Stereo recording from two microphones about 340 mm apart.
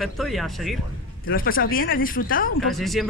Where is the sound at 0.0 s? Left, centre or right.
Centre.